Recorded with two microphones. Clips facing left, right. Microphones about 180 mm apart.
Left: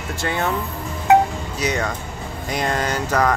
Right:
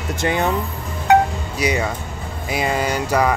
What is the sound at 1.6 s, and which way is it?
Speech, 10° right (ahead or behind).